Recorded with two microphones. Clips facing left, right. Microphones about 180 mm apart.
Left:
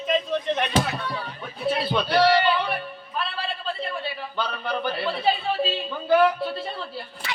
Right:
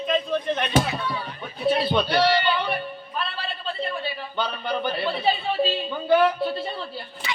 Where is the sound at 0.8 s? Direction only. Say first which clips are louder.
Right 1 dB; 5° right (ahead or behind).